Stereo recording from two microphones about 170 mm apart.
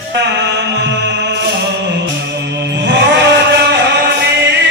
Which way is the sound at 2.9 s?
90° right.